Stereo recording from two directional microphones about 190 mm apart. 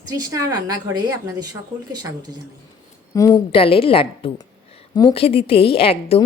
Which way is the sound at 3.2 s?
30° left (ahead or behind).